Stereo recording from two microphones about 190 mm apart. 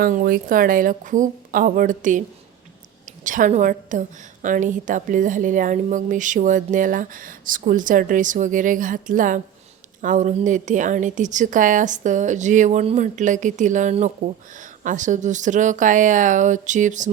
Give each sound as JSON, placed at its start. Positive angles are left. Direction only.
{"t": 0.0, "sound": "a woman's voice", "side_deg": -50}
{"t": 3.2, "sound": "a woman's voice", "side_deg": -45}